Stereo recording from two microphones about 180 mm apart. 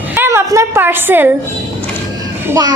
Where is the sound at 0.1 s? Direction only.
15° right (ahead or behind).